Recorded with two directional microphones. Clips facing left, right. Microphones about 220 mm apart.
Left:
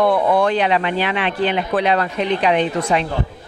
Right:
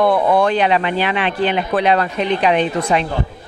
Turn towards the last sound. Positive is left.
turn(degrees=-20)  # may be behind; listen again after turning